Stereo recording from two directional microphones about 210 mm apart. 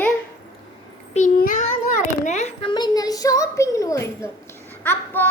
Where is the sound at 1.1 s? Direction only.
40° left (ahead or behind); by 4.3 s 15° left (ahead or behind).